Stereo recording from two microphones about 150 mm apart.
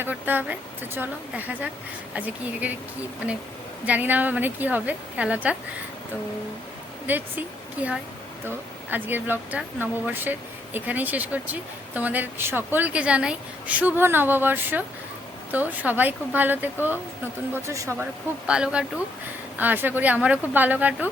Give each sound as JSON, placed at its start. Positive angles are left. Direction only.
{"t": 0.0, "sound": "speech", "side_deg": -10}
{"t": 3.8, "sound": "speech", "side_deg": -10}
{"t": 7.1, "sound": "speech", "side_deg": -10}
{"t": 18.4, "sound": "speech", "side_deg": -5}